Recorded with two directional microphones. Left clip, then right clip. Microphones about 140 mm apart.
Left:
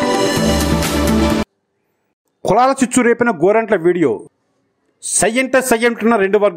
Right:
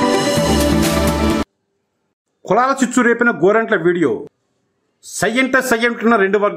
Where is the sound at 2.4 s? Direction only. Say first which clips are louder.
Left 2 dB; 40° left (ahead or behind).